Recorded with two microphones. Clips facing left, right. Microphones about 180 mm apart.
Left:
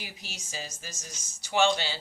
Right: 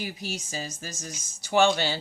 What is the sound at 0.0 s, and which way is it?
Speech, 50° right (ahead or behind).